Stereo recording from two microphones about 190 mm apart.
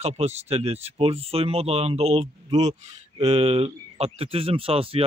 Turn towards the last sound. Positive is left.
turn(degrees=-30)  # may be behind; listen again after turning